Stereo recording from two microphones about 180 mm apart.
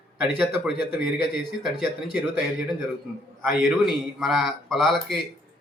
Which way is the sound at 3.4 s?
Centre (ahead or behind).